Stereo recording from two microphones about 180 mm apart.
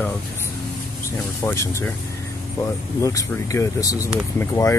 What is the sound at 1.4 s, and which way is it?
Speech, 15° left (ahead or behind).